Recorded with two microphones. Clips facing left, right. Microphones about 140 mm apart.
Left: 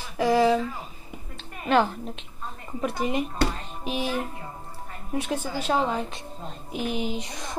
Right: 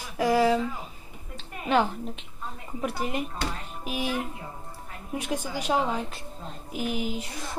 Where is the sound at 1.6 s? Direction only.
10° right (ahead or behind).